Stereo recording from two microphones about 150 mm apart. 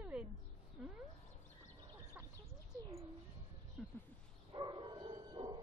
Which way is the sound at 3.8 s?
Centre (ahead or behind).